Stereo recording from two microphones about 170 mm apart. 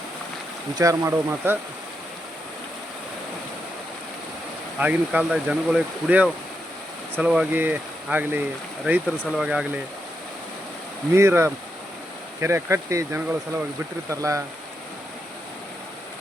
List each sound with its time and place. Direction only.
0.8 s speech: 15° right (ahead or behind)
4.8 s speech: 10° right (ahead or behind)
11.1 s speech: 15° right (ahead or behind)